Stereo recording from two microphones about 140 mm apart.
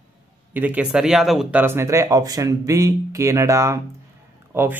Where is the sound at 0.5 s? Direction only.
10° right (ahead or behind).